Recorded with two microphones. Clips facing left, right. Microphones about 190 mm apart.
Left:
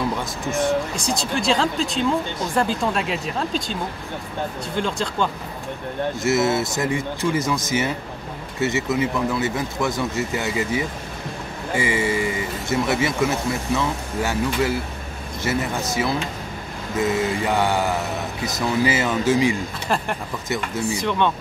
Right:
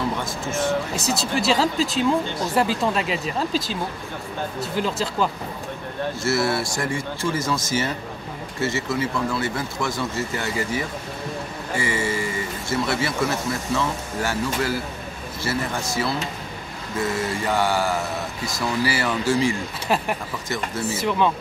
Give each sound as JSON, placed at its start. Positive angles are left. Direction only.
{"t": 0.2, "sound": "speech", "side_deg": 15}
{"t": 0.9, "sound": "speech", "side_deg": -5}
{"t": 4.7, "sound": "speech", "side_deg": -5}
{"t": 6.2, "sound": "speech", "side_deg": 20}
{"t": 19.9, "sound": "speech", "side_deg": -5}